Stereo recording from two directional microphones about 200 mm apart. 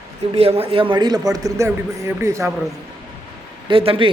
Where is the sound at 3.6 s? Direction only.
25° right (ahead or behind).